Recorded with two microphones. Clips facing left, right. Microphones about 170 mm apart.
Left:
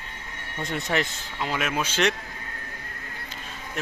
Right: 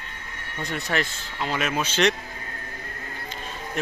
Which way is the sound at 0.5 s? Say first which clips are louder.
Left 1 dB; 20° left (ahead or behind).